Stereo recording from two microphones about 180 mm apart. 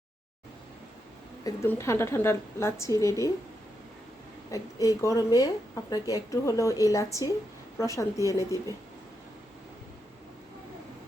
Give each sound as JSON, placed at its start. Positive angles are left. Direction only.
{"t": 1.5, "sound": "a woman's voice", "side_deg": 15}
{"t": 4.5, "sound": "a woman's voice", "side_deg": 20}